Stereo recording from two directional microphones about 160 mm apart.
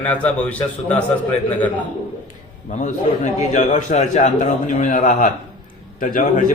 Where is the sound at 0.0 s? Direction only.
10° left (ahead or behind).